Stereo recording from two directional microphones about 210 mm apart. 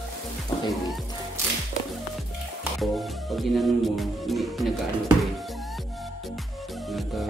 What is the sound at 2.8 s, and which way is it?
Music, centre (ahead or behind).